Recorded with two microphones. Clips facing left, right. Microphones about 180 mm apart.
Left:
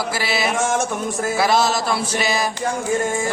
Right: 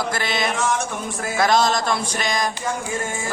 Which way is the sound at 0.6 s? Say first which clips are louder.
Left 3 dB; 50° left (ahead or behind).